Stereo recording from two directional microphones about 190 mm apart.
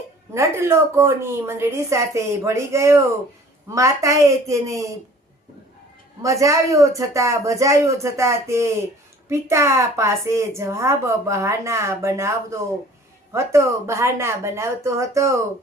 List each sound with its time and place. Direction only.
0.3 s a woman's voice: 15° right (ahead or behind)
6.2 s a woman's voice: 15° right (ahead or behind)